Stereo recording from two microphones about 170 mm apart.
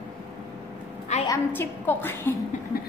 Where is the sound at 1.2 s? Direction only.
15° left (ahead or behind).